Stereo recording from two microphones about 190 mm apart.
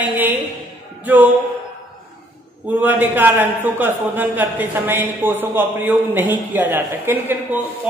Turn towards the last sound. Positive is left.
turn(degrees=-10)  # may be behind; listen again after turning